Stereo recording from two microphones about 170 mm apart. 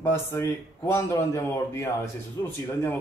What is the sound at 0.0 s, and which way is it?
A man's voice, 15° left (ahead or behind).